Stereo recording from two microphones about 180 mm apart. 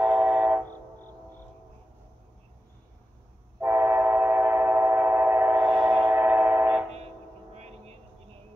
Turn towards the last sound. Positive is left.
turn(degrees=-35)  # may be behind; listen again after turning